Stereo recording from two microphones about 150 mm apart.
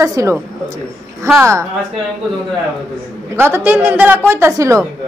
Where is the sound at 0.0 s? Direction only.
20° right (ahead or behind).